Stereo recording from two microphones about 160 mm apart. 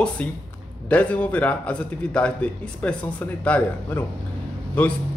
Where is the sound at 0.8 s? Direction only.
10° left (ahead or behind).